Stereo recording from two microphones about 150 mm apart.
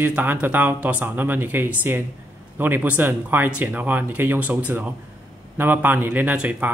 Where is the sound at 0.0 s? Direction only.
10° right (ahead or behind).